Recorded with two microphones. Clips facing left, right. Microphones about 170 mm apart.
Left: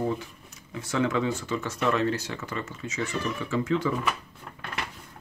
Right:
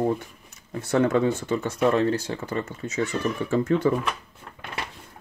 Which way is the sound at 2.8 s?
50° right (ahead or behind).